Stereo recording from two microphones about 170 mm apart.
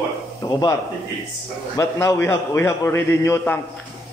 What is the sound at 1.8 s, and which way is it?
A man's voice, 15° left (ahead or behind).